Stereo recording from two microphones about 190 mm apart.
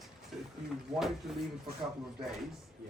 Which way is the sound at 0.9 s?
35° right (ahead or behind).